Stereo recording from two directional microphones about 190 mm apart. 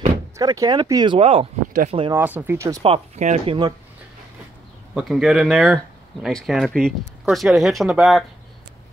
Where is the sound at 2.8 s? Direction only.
35° right (ahead or behind).